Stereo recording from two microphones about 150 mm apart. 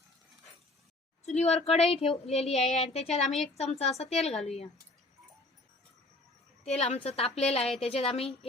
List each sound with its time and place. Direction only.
1.2 s a woman's voice: 50° left (ahead or behind)
6.7 s a woman's voice: 45° left (ahead or behind)